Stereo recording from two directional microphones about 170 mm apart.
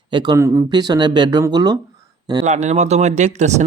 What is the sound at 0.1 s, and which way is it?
Speech, 25° right (ahead or behind).